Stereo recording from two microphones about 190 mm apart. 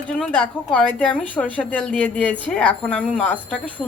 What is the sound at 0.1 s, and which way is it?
A woman's voice, 5° left (ahead or behind).